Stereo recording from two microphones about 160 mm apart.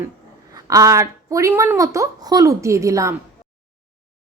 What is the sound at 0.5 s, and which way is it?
A woman's voice, 20° right (ahead or behind).